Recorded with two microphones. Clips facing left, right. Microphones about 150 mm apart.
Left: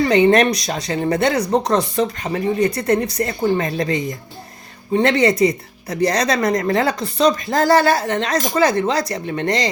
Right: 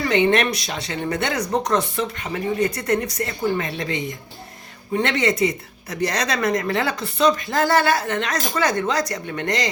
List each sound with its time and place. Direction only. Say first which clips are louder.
0.0 s speech: left 5 dB; 35° left (ahead or behind)